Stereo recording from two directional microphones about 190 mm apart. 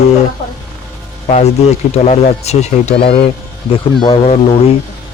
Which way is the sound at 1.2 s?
35° left (ahead or behind).